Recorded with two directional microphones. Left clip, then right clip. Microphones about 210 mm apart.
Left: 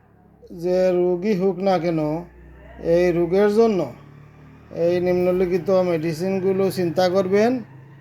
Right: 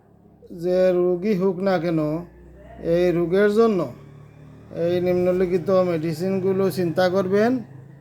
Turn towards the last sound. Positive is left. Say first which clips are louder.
# left 2 dB
turn(degrees=10)  # may be behind; listen again after turning